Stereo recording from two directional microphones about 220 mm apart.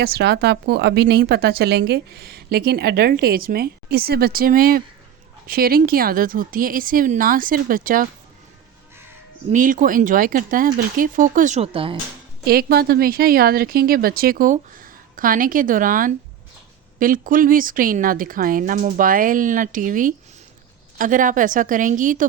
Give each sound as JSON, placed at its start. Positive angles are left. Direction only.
{"t": 0.0, "sound": "speech", "side_deg": -45}
{"t": 9.5, "sound": "speech", "side_deg": -35}
{"t": 12.5, "sound": "speech", "side_deg": -45}